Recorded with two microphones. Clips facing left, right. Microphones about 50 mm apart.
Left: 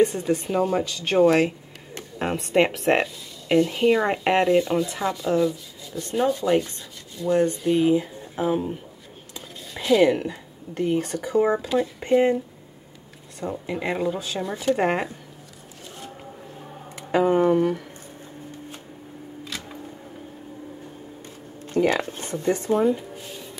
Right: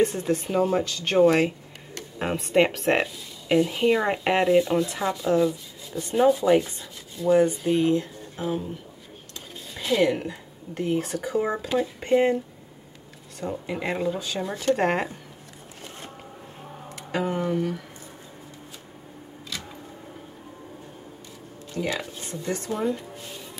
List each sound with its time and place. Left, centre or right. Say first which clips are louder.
0.0 s speech: left 2 dB; centre
8.4 s speech: left 5 dB; centre
9.3 s speech: left 2 dB; centre
13.4 s speech: left 1 dB; centre
17.3 s speech: left 8 dB; left
21.6 s speech: left 8 dB; left
22.5 s speech: left 7 dB; left
22.8 s music: left 6 dB; centre